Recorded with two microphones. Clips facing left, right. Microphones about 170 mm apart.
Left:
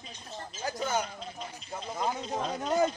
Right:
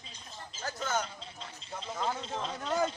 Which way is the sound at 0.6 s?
10° left (ahead or behind).